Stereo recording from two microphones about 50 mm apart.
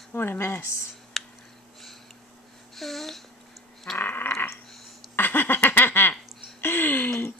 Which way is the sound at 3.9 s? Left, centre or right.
Left.